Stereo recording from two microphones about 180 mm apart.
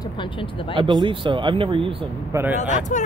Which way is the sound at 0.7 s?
25° right (ahead or behind).